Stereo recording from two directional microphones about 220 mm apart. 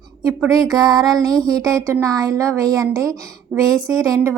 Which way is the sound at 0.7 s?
15° right (ahead or behind).